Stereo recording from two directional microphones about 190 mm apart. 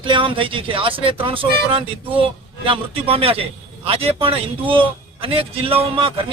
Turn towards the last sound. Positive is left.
turn(degrees=-30)  # may be behind; listen again after turning